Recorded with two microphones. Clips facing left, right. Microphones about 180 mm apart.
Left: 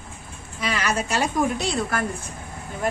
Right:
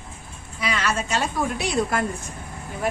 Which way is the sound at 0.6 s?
Centre (ahead or behind).